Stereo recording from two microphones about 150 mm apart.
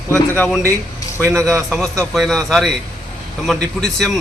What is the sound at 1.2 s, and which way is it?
Speech, 20° right (ahead or behind).